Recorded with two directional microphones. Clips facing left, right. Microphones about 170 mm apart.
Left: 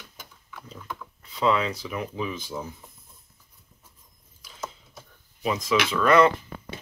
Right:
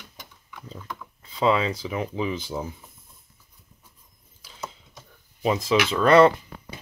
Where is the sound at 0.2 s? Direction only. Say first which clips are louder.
Right 1 dB; 5° left (ahead or behind).